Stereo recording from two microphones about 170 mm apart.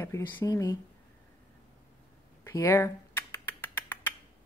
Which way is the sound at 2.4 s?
15° left (ahead or behind).